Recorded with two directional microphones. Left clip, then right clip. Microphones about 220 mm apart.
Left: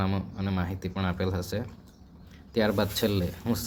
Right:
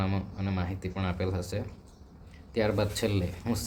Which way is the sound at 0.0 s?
15° left (ahead or behind).